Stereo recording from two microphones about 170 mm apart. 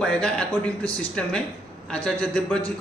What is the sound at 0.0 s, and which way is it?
A man's voice, 5° left (ahead or behind).